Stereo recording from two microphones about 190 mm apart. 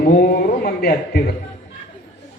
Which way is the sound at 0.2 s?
55° left (ahead or behind).